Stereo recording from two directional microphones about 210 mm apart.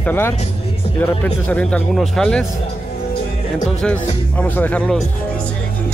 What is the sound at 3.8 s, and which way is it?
Speech, 5° left (ahead or behind).